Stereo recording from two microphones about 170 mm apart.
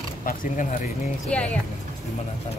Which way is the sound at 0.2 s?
55° left (ahead or behind).